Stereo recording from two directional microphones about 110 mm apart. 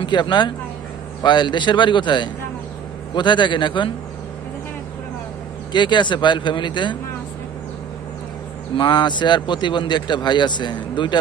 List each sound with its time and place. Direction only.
0.0 s speech: 45° left (ahead or behind)
5.7 s speech: 45° left (ahead or behind)
8.7 s speech: 45° left (ahead or behind)